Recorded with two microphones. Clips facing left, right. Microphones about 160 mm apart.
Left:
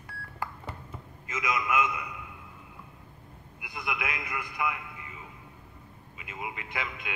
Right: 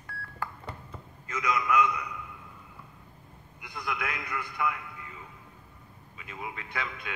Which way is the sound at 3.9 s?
20° left (ahead or behind).